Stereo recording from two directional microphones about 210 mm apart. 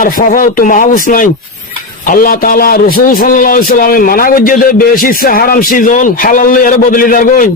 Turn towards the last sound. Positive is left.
turn(degrees=40)  # may be behind; listen again after turning